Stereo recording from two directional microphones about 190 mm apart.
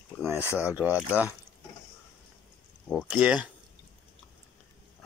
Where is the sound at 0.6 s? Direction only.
10° right (ahead or behind).